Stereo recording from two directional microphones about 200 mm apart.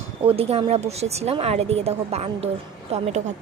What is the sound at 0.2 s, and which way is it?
Speech, 30° right (ahead or behind).